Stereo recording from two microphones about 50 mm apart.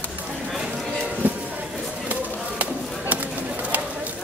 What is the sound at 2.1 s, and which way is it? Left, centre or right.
Bird, right.